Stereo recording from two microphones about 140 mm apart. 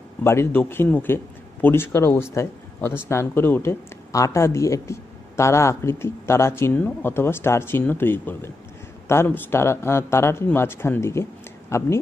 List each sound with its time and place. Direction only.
0.2 s speech: 20° left (ahead or behind)